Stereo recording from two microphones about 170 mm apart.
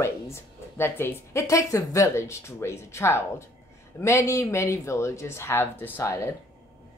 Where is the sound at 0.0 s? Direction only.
15° left (ahead or behind).